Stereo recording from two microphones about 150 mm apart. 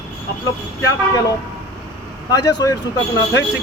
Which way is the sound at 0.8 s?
20° left (ahead or behind).